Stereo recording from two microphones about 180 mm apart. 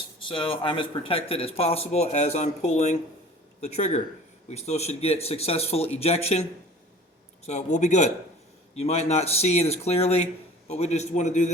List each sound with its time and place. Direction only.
0.2 s speech: 30° left (ahead or behind)
7.4 s speech: 40° left (ahead or behind)